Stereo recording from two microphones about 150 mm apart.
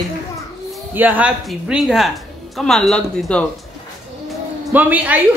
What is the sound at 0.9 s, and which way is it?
Speech, 10° right (ahead or behind).